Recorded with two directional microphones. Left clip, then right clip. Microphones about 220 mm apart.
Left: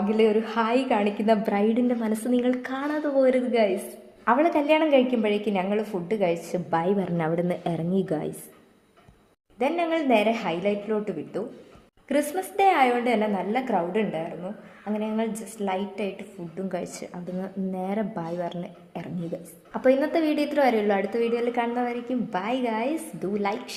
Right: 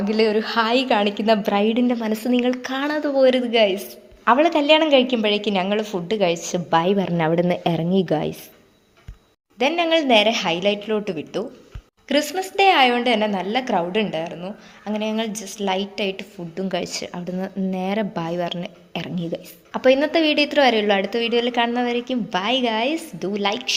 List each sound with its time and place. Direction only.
0.1 s a woman's voice: 35° right (ahead or behind)
2.8 s a woman's voice: 35° right (ahead or behind)
9.6 s a woman's voice: 35° right (ahead or behind)
16.6 s a woman's voice: 35° right (ahead or behind)